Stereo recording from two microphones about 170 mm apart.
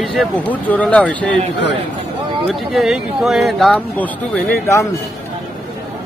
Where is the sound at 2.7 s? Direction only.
Centre (ahead or behind).